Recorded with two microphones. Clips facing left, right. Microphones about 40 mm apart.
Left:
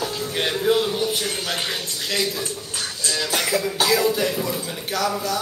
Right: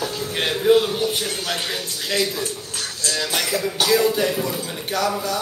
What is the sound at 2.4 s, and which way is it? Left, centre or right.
Music, centre.